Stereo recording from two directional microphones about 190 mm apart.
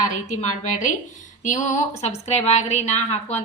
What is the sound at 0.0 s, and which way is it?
A woman's voice, 40° left (ahead or behind).